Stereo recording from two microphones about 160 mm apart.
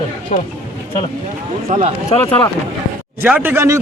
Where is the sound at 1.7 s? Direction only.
50° right (ahead or behind).